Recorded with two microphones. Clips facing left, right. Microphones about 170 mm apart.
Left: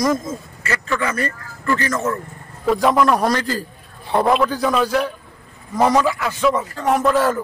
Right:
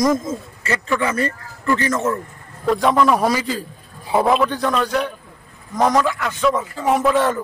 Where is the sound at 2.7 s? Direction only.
Centre (ahead or behind).